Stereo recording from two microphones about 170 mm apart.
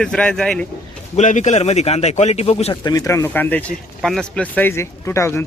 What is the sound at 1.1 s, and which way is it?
A man's voice, 45° left (ahead or behind).